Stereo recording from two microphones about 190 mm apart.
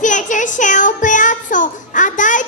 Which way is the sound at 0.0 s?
40° left (ahead or behind).